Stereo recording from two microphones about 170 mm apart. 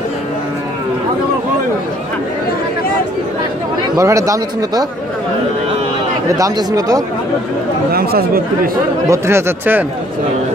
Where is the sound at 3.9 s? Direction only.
20° right (ahead or behind).